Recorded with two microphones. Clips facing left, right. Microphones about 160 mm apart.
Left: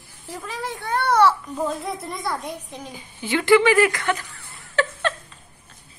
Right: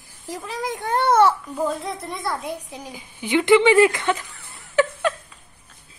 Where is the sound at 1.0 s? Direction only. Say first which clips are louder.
Right 1 dB; 20° right (ahead or behind).